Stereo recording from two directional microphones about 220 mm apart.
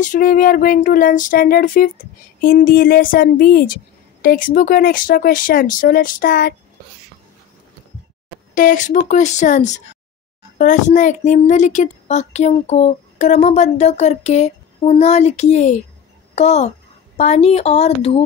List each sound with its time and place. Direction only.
0.0 s speech: 35° left (ahead or behind)
8.5 s a woman's voice: 35° left (ahead or behind)